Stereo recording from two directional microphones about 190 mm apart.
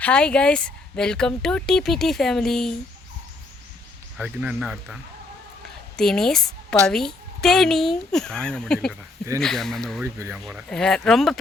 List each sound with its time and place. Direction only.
0.0 s speech: 5° left (ahead or behind)
4.2 s speech: 5° right (ahead or behind)
6.0 s a woman's voice: centre (ahead or behind)
10.0 s speech: 10° right (ahead or behind)
10.4 s speech: centre (ahead or behind)